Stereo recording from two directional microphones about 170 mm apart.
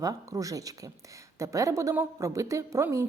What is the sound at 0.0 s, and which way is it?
A woman's voice, 20° right (ahead or behind).